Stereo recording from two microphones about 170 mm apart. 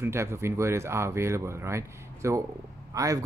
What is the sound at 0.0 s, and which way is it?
Speech, 15° right (ahead or behind).